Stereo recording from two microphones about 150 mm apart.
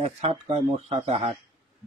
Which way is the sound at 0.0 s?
45° right (ahead or behind).